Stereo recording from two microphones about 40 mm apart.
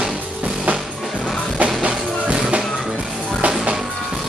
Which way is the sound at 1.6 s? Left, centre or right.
Right.